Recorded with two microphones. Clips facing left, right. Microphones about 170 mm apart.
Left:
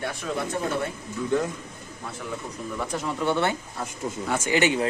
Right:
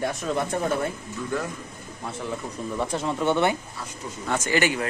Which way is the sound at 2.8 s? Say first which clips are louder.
Right 2 dB; 25° right (ahead or behind).